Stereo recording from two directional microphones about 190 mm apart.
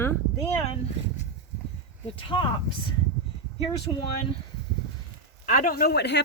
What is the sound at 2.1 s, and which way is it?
Speech, 25° left (ahead or behind).